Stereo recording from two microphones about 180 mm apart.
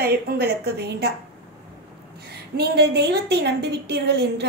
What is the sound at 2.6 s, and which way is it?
A woman's voice, 65° right (ahead or behind).